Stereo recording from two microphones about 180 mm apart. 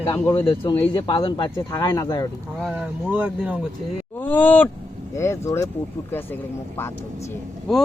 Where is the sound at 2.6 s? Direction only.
5° right (ahead or behind).